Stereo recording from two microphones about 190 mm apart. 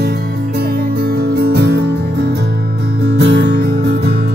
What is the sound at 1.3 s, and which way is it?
Music, 60° right (ahead or behind).